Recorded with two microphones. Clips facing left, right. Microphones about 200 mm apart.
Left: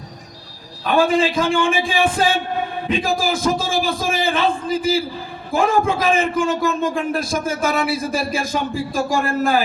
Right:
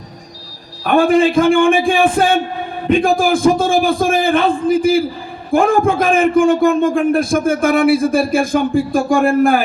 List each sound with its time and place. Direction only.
0.9 s a man's voice: 55° right (ahead or behind)